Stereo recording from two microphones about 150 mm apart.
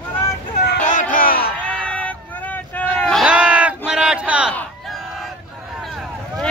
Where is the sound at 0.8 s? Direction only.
55° left (ahead or behind).